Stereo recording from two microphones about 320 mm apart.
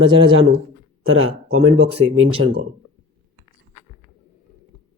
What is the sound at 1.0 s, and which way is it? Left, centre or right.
Speech, right.